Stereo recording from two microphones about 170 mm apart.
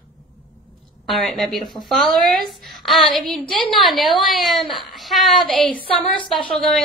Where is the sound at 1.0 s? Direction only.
Centre (ahead or behind).